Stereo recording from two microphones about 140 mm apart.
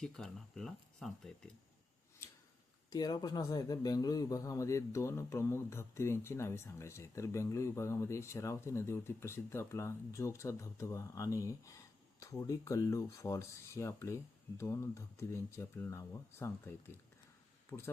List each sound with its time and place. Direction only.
0.0 s speech: 5° left (ahead or behind)
2.9 s speech: 30° left (ahead or behind)